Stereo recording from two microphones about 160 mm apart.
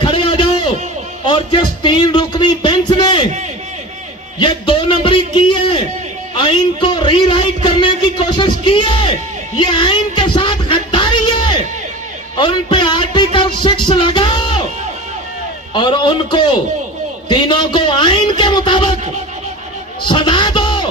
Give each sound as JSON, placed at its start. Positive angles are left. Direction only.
{"t": 0.0, "sound": "a sound", "side_deg": 30}
{"t": 1.2, "sound": "speech", "side_deg": 30}
{"t": 4.4, "sound": "a man's voice", "side_deg": 30}
{"t": 9.6, "sound": "music", "side_deg": 30}
{"t": 12.4, "sound": "a man's voice", "side_deg": 30}
{"t": 15.7, "sound": "a man's voice", "side_deg": 30}
{"t": 20.1, "sound": "a sound", "side_deg": 30}